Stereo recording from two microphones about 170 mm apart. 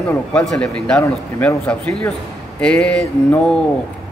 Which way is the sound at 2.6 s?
5° left (ahead or behind).